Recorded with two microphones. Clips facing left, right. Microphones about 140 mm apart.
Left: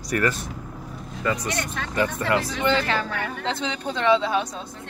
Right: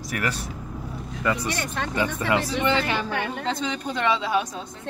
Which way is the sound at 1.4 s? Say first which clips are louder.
Right 1 dB; 30° right (ahead or behind).